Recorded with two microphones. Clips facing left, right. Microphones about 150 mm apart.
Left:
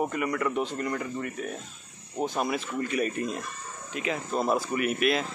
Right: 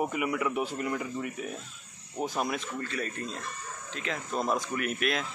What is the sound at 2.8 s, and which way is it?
Speech, 15° left (ahead or behind).